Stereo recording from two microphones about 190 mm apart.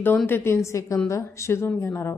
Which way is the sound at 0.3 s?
10° left (ahead or behind).